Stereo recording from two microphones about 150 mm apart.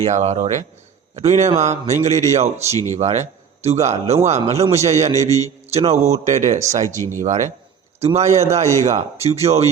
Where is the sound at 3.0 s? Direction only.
45° right (ahead or behind).